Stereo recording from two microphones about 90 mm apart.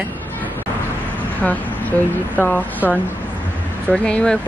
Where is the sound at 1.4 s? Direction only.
20° left (ahead or behind).